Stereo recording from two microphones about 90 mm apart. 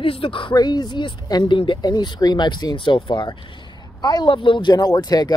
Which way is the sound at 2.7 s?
65° left (ahead or behind).